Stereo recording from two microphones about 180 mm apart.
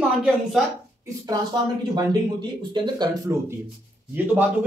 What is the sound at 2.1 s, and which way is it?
Speech, 25° right (ahead or behind).